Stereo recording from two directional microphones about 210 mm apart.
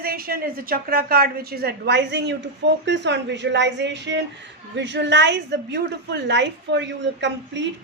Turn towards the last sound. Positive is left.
turn(degrees=-55)  # may be behind; listen again after turning